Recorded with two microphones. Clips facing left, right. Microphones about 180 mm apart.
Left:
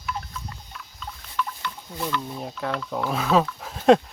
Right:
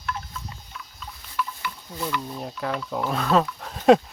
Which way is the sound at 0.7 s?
5° right (ahead or behind).